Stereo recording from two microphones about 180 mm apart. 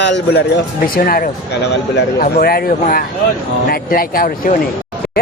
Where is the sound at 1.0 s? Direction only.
50° left (ahead or behind).